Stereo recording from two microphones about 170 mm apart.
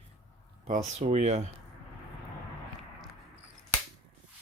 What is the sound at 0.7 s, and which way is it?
Speech, 45° right (ahead or behind).